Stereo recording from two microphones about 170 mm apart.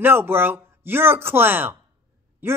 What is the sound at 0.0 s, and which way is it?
A woman's voice, 15° right (ahead or behind).